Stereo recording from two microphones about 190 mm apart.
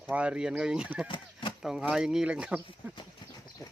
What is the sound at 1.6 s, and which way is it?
Speech, 5° right (ahead or behind).